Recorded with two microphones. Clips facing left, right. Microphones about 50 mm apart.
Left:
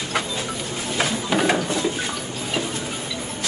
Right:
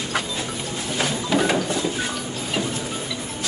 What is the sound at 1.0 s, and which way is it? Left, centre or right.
Mechanisms, centre.